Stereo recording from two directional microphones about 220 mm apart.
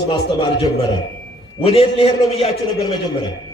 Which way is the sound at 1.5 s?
25° left (ahead or behind).